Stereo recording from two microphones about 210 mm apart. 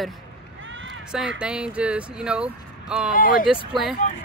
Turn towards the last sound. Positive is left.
turn(degrees=0)  # may be behind; listen again after turning